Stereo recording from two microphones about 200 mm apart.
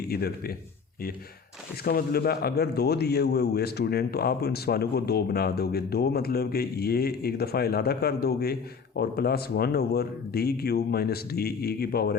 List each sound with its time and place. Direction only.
0.1 s speech: 50° left (ahead or behind)
1.8 s speech: 50° left (ahead or behind)